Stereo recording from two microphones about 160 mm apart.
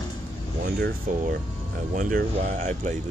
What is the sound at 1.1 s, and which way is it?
Speech, 55° right (ahead or behind).